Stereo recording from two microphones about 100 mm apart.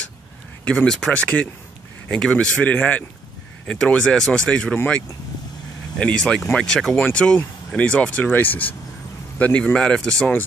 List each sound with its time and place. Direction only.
0.7 s speech: 5° left (ahead or behind)